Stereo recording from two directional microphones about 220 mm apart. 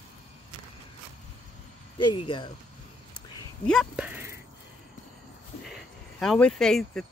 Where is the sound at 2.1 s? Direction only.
25° left (ahead or behind).